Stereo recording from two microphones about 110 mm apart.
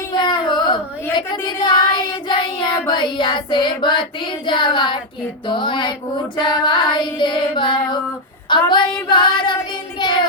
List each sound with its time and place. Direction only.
0.1 s a sound: 45° left (ahead or behind)
1.1 s child singing: 45° left (ahead or behind)
5.5 s female singing: 45° left (ahead or behind)